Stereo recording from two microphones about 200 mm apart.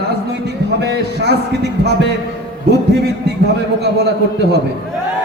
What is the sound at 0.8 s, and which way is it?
Speech, 55° right (ahead or behind).